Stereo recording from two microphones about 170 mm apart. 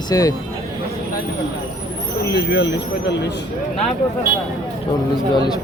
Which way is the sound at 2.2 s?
75° left (ahead or behind).